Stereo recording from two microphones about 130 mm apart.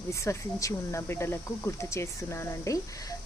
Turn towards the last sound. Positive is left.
turn(degrees=20)  # may be behind; listen again after turning